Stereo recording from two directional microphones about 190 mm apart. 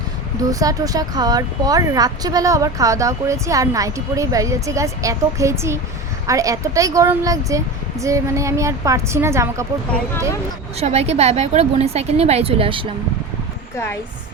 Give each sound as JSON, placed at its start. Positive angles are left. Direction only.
{"t": 0.6, "sound": "speech", "side_deg": -20}
{"t": 10.8, "sound": "a woman's voice", "side_deg": -35}